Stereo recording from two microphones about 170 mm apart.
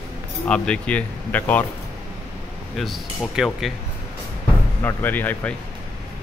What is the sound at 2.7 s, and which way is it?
Speech, centre (ahead or behind).